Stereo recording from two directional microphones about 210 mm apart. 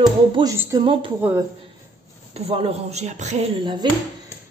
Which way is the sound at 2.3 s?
30° right (ahead or behind).